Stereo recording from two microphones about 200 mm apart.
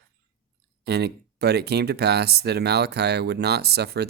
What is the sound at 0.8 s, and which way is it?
Speech, 55° right (ahead or behind).